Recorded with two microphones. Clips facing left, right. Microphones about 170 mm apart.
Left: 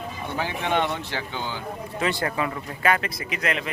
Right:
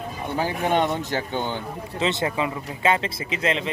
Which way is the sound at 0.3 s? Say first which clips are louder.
Right 3 dB; 40° right (ahead or behind).